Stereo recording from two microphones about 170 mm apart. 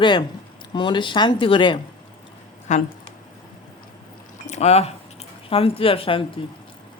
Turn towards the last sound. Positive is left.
turn(degrees=30)  # may be behind; listen again after turning